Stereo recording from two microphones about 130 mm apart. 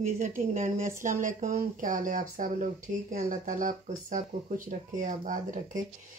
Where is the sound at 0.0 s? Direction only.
85° right.